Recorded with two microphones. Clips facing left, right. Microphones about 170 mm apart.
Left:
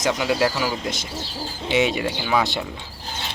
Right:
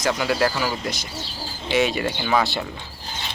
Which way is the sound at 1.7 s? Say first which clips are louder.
Even; 20° left (ahead or behind).